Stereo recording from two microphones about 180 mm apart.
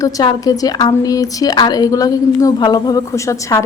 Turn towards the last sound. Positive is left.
turn(degrees=20)  # may be behind; listen again after turning